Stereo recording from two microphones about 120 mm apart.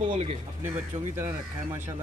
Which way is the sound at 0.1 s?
65° right (ahead or behind).